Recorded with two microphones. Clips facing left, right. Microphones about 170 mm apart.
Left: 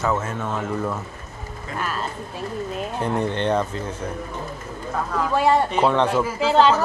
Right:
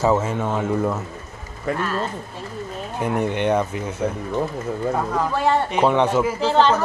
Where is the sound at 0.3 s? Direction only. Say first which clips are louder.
Right 4 dB; 15° right (ahead or behind).